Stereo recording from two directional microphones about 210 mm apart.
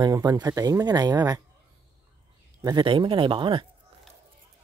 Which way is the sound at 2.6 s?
20° right (ahead or behind).